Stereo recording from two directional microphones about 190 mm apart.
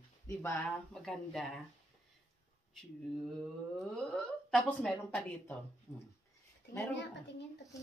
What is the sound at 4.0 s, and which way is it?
A woman's voice, 5° left (ahead or behind).